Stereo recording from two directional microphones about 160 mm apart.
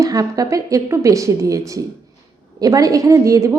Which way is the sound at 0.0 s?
20° right (ahead or behind).